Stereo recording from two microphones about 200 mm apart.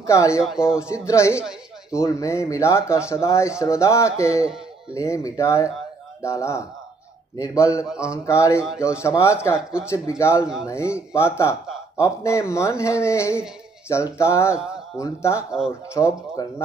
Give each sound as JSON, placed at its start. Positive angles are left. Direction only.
{"t": 0.0, "sound": "speech", "side_deg": 15}
{"t": 0.4, "sound": "speech", "side_deg": -5}
{"t": 0.8, "sound": "speech", "side_deg": 15}
{"t": 7.9, "sound": "speech", "side_deg": -5}
{"t": 8.3, "sound": "speech", "side_deg": 15}
{"t": 8.5, "sound": "speech", "side_deg": -5}
{"t": 8.8, "sound": "speech", "side_deg": 15}
{"t": 9.6, "sound": "speech", "side_deg": -5}
{"t": 9.8, "sound": "speech", "side_deg": 15}